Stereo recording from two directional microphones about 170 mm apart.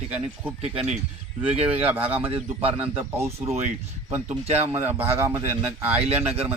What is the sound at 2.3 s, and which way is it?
Speech, 35° right (ahead or behind).